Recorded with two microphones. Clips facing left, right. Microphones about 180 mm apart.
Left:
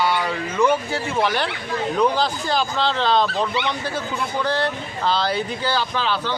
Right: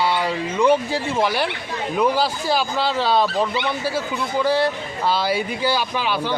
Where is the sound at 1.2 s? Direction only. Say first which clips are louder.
Even; 10° right (ahead or behind).